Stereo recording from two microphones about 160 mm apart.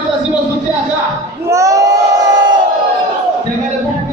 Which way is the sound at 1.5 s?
20° right (ahead or behind).